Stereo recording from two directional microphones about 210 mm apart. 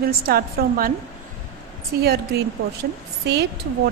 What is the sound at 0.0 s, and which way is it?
Speech, 45° right (ahead or behind).